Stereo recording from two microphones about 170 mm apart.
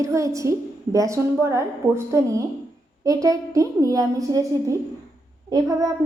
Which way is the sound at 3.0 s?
20° right (ahead or behind).